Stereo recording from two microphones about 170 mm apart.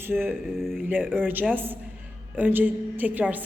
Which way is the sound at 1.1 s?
10° right (ahead or behind).